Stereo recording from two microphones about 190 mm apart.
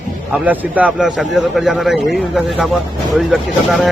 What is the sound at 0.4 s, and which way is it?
A man's voice, 10° right (ahead or behind).